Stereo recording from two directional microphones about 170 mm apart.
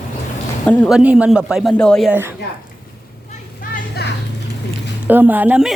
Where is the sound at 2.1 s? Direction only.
15° right (ahead or behind).